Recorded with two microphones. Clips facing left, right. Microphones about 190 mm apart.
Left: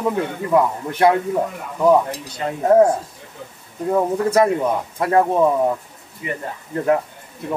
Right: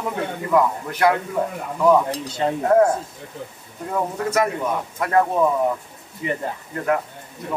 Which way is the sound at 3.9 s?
30° left (ahead or behind).